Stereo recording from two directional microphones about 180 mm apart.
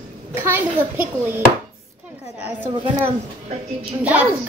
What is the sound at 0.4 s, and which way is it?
Speech, 10° right (ahead or behind).